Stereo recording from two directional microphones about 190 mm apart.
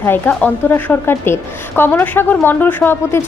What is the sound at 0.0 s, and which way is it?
A woman's voice, 10° left (ahead or behind).